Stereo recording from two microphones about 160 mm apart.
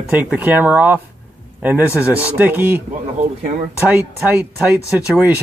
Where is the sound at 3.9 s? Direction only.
10° right (ahead or behind).